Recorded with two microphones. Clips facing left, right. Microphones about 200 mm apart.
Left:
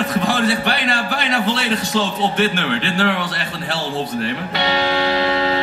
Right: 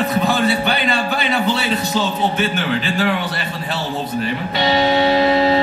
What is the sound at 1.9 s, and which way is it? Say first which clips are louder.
Speech: even; 70° left (ahead or behind).